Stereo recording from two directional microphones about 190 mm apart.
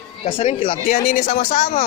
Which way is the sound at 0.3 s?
30° left (ahead or behind).